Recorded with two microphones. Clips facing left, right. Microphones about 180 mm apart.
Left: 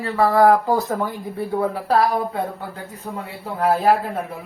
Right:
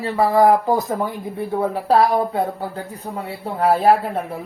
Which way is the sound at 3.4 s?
30° right (ahead or behind).